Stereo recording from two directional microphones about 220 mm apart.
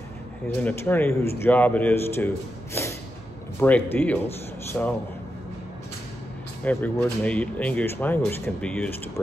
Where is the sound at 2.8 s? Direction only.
10° left (ahead or behind).